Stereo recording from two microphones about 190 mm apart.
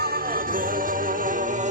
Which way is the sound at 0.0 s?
50° right (ahead or behind).